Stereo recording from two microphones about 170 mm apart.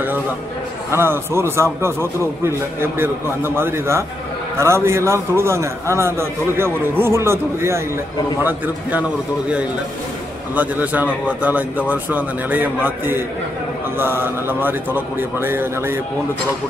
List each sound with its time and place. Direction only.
0.9 s a man's voice: 15° right (ahead or behind)
10.5 s a man's voice: 10° right (ahead or behind)